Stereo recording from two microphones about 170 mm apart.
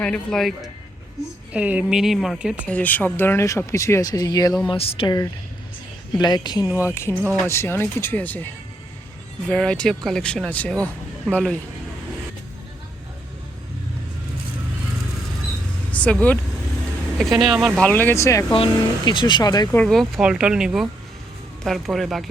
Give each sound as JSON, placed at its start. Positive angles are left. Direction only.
{"t": 0.0, "sound": "speech", "side_deg": 5}
{"t": 1.5, "sound": "speech", "side_deg": -10}
{"t": 2.6, "sound": "speech", "side_deg": 10}
{"t": 4.7, "sound": "speech", "side_deg": 35}
{"t": 6.7, "sound": "speech", "side_deg": -10}
{"t": 6.9, "sound": "speech", "side_deg": 15}
{"t": 9.5, "sound": "speech", "side_deg": 5}
{"t": 15.9, "sound": "speech", "side_deg": 5}
{"t": 18.5, "sound": "speech", "side_deg": 30}
{"t": 19.7, "sound": "speech", "side_deg": 5}